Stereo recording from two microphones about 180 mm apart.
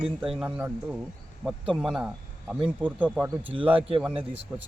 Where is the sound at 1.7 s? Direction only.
Centre (ahead or behind).